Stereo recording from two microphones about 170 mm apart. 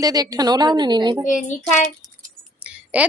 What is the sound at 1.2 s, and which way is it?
Speech, 50° left (ahead or behind).